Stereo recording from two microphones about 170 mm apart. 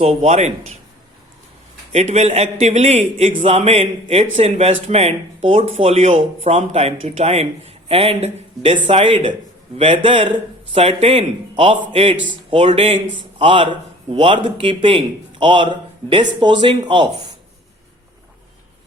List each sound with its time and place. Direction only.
0.0 s speech: 40° right (ahead or behind)
1.9 s speech: 40° right (ahead or behind)